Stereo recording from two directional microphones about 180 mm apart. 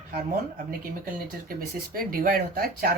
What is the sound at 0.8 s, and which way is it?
Speech, 50° right (ahead or behind).